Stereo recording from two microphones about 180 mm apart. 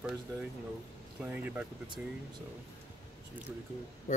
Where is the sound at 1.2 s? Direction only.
10° right (ahead or behind).